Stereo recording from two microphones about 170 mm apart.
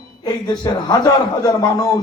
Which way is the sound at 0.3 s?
25° left (ahead or behind).